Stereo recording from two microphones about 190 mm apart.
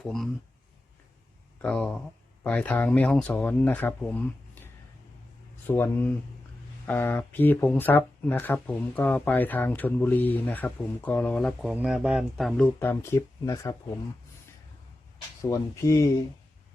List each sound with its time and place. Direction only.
0.0 s speech: centre (ahead or behind)
1.6 s speech: 5° left (ahead or behind)
5.6 s speech: 10° left (ahead or behind)
15.4 s speech: 15° left (ahead or behind)